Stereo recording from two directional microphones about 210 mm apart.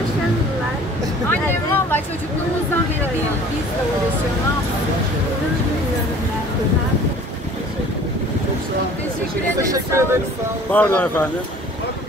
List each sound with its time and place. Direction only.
1.3 s a sound: 10° left (ahead or behind)
9.6 s speech: 15° right (ahead or behind)
10.7 s speech: 5° left (ahead or behind)